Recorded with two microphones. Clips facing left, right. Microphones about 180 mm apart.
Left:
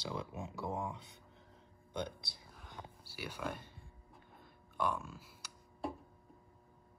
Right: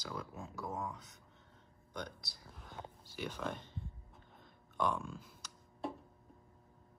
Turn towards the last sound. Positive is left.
turn(degrees=5)  # may be behind; listen again after turning